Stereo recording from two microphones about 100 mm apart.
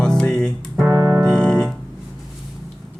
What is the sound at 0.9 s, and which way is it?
Music, 30° right (ahead or behind).